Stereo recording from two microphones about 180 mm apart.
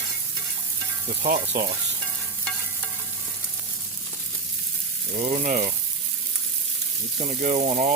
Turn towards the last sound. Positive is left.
turn(degrees=-40)  # may be behind; listen again after turning